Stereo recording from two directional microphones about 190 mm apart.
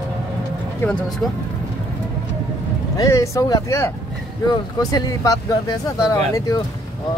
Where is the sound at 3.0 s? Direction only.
15° left (ahead or behind).